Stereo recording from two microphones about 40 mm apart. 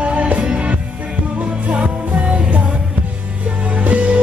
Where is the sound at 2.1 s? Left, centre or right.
Right.